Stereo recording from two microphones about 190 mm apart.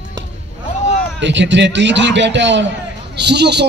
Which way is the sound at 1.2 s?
70° right (ahead or behind).